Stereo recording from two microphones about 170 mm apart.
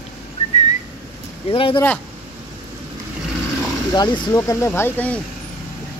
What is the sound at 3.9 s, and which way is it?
A man's voice, 25° left (ahead or behind).